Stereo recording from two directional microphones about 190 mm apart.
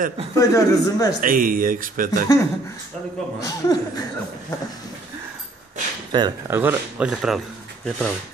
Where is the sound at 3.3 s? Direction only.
20° left (ahead or behind).